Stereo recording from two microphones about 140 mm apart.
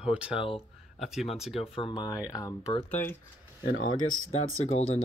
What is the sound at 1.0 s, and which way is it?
Speech, centre (ahead or behind).